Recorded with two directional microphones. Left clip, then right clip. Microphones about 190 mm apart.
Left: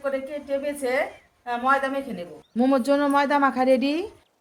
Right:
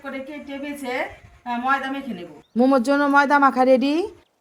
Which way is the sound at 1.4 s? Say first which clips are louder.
Even; 30° left (ahead or behind).